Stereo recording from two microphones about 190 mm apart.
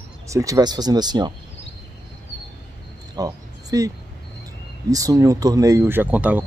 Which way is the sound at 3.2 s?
20° right (ahead or behind).